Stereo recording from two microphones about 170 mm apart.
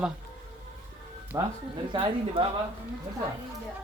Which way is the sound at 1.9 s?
35° right (ahead or behind).